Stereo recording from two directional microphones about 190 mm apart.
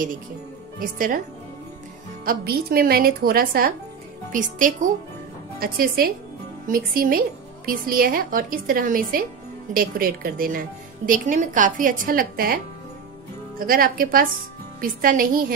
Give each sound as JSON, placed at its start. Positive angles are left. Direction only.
{"t": 0.7, "sound": "a woman's voice", "side_deg": -50}
{"t": 2.2, "sound": "a woman's voice", "side_deg": -55}
{"t": 13.6, "sound": "a woman's voice", "side_deg": -50}